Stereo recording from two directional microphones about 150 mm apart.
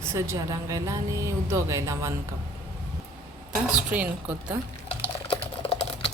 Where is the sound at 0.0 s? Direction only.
20° right (ahead or behind).